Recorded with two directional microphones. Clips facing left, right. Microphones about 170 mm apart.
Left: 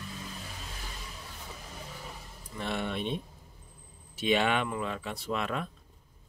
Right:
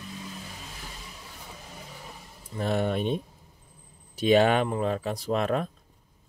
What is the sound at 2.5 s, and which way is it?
Speech, 40° right (ahead or behind).